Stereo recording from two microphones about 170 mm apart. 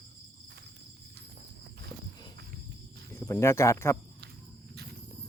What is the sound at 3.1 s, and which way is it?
Speech, 15° left (ahead or behind).